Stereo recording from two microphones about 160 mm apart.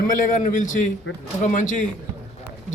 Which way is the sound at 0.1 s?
50° left (ahead or behind).